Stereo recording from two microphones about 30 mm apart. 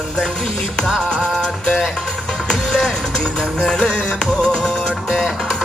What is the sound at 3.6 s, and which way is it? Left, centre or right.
Music, left.